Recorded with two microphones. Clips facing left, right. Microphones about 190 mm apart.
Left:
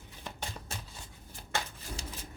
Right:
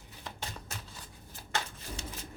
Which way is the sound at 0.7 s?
30° left (ahead or behind).